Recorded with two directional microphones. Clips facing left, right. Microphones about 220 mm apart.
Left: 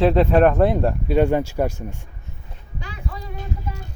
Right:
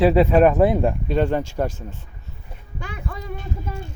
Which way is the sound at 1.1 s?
10° left (ahead or behind).